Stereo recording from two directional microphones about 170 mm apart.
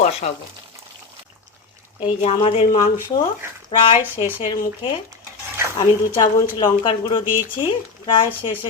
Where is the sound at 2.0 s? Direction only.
35° left (ahead or behind).